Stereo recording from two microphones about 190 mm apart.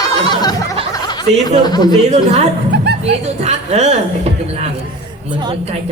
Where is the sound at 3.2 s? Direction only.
35° right (ahead or behind).